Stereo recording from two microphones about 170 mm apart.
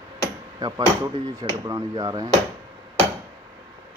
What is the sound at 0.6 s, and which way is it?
Speech, 25° right (ahead or behind).